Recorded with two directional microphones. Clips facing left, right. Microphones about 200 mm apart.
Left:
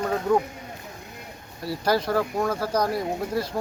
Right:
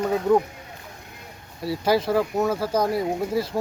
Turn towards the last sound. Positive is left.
turn(degrees=0)  # may be behind; listen again after turning